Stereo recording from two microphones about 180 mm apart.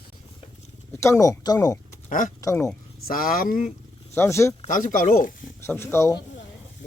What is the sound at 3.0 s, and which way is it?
Speech, 55° left (ahead or behind).